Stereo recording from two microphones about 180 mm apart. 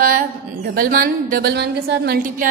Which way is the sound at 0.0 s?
50° right (ahead or behind).